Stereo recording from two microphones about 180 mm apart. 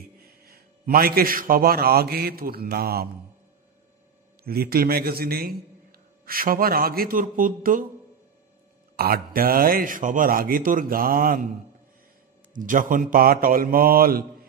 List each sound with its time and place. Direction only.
0.2 s a man's voice: 55° right (ahead or behind)
4.5 s a man's voice: 55° right (ahead or behind)
8.9 s a man's voice: 55° right (ahead or behind)
12.5 s a man's voice: 45° right (ahead or behind)